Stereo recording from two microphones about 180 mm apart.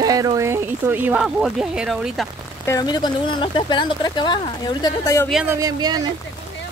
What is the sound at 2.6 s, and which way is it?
Speech, 20° left (ahead or behind).